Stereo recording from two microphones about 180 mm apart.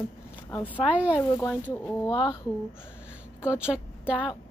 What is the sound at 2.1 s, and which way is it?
Speech, 25° left (ahead or behind).